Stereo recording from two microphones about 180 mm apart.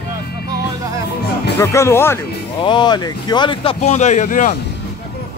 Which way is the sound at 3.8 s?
40° left (ahead or behind).